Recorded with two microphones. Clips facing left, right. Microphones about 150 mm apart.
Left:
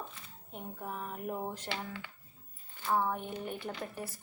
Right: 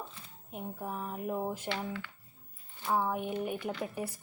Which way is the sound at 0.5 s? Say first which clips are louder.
Right 3 dB; 5° right (ahead or behind).